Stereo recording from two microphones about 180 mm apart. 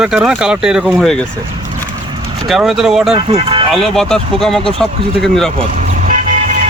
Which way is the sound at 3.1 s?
35° right (ahead or behind).